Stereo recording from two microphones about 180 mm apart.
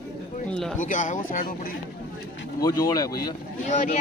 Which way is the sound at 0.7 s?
45° left (ahead or behind).